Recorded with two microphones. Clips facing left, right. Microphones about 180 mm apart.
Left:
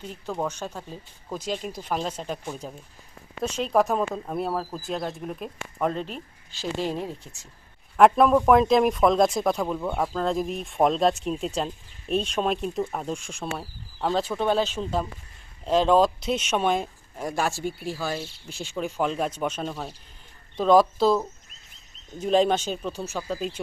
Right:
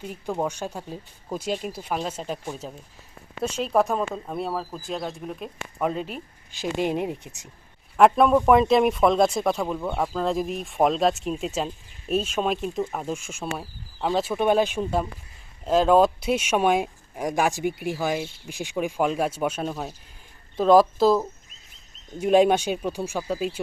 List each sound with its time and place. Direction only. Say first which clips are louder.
0.0 s speech: right 2 dB; 10° right (ahead or behind)
7.9 s speech: even; centre (ahead or behind)